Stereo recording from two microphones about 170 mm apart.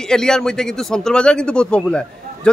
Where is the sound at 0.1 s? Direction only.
5° left (ahead or behind).